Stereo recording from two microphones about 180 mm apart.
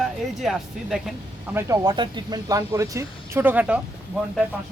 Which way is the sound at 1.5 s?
20° right (ahead or behind).